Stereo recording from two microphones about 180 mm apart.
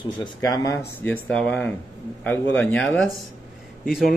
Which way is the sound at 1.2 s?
5° left (ahead or behind).